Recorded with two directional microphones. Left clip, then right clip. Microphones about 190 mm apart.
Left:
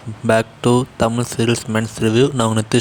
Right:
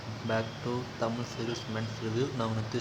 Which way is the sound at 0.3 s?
60° left (ahead or behind).